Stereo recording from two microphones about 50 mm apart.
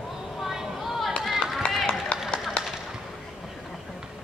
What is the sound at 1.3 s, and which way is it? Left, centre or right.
Run, centre.